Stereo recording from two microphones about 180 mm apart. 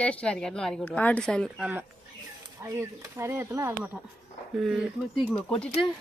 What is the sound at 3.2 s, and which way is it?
Speech, 15° right (ahead or behind).